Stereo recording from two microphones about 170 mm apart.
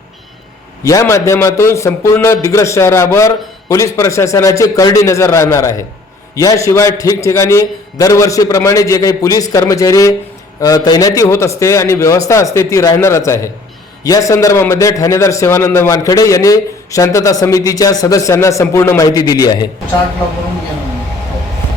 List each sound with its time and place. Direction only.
0.9 s a man's voice: 20° left (ahead or behind)